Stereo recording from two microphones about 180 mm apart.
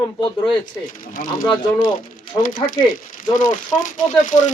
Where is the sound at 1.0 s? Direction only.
50° left (ahead or behind).